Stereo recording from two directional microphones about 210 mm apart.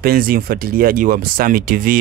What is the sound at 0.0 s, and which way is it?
Speech, 45° right (ahead or behind).